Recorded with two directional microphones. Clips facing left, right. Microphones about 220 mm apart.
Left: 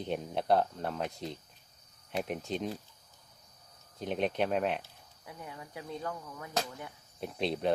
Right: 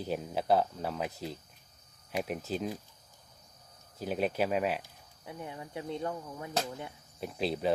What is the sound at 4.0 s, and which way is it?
Speech, 5° right (ahead or behind).